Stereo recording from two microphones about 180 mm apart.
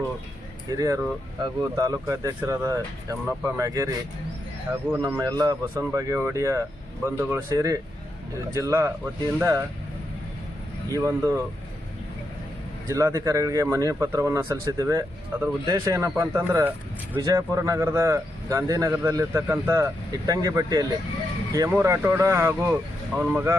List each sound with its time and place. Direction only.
0.8 s a man's voice: 20° right (ahead or behind)
10.9 s a man's voice: 15° right (ahead or behind)
12.9 s a man's voice: 20° right (ahead or behind)